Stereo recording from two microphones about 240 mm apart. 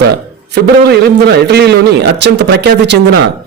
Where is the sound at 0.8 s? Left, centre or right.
Right.